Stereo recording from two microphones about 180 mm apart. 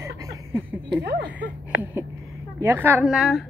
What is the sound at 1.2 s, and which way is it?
A woman's voice, 10° right (ahead or behind).